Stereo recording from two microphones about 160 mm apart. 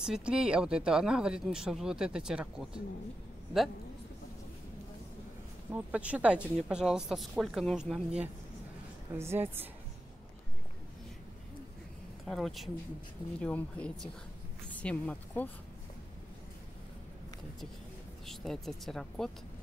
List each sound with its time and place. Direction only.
0.0 s speech: 5° right (ahead or behind)
5.7 s speech: 10° right (ahead or behind)
9.1 s a woman's voice: 15° right (ahead or behind)
12.3 s speech: centre (ahead or behind)
18.2 s speech: centre (ahead or behind)